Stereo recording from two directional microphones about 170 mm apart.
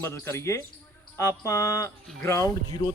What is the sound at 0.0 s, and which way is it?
Speech, 15° left (ahead or behind).